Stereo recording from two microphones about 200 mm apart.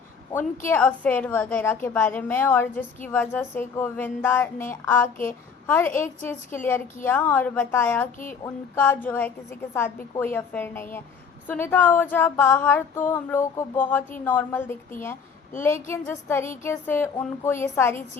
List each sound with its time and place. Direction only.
0.6 s a woman's voice: 10° left (ahead or behind)